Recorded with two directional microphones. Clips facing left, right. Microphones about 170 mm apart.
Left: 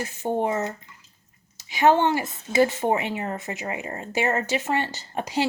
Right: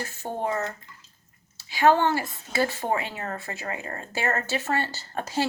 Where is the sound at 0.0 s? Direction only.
15° left (ahead or behind).